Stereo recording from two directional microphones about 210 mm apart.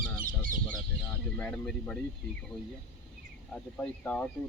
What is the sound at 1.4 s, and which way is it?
Speech, 5° left (ahead or behind).